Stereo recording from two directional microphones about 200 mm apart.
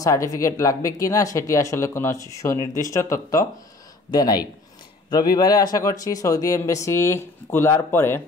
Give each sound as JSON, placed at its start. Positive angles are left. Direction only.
{"t": 0.0, "sound": "speech", "side_deg": 15}